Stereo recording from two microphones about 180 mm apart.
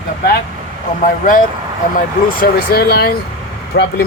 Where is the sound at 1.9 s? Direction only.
55° left (ahead or behind).